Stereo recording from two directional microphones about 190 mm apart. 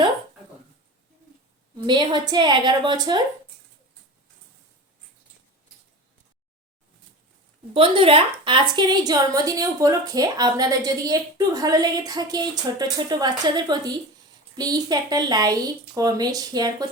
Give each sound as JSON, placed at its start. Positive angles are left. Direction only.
{"t": 1.9, "sound": "a woman's voice", "side_deg": -25}
{"t": 7.7, "sound": "a woman's voice", "side_deg": -30}